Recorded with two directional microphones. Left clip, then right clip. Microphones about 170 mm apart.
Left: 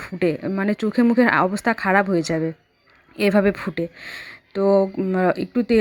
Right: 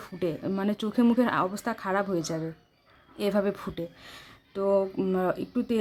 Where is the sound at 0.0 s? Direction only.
25° left (ahead or behind).